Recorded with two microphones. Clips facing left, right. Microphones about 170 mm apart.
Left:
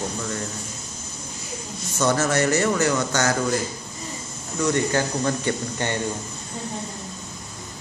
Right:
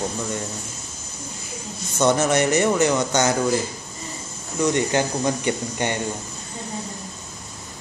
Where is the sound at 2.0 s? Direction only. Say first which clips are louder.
Right 2 dB; 20° right (ahead or behind).